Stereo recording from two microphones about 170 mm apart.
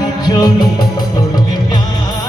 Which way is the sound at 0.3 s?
25° left (ahead or behind).